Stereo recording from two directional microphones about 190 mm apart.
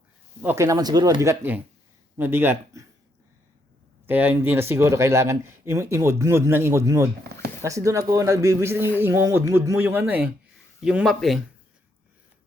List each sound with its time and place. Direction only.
0.4 s speech: 15° right (ahead or behind)
4.0 s speech: 10° right (ahead or behind)